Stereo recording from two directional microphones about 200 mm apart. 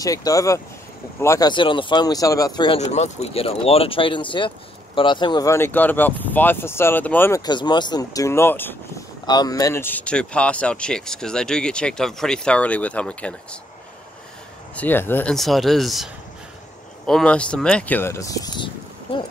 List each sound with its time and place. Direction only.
0.0 s speech: 15° left (ahead or behind)
9.2 s speech: 20° left (ahead or behind)
14.8 s speech: 10° left (ahead or behind)